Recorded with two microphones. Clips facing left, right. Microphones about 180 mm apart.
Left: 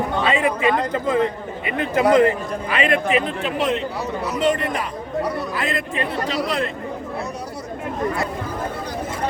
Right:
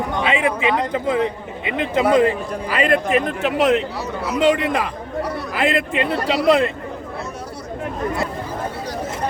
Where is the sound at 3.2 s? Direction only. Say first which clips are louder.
Right 4 dB; 70° right (ahead or behind).